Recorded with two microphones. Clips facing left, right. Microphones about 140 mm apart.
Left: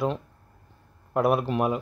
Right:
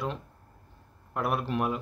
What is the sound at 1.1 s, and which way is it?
Speech, 20° left (ahead or behind).